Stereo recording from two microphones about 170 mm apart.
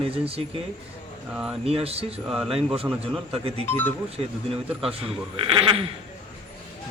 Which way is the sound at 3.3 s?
35° right (ahead or behind).